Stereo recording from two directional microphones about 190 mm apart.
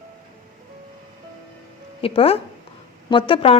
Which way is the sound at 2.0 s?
30° left (ahead or behind).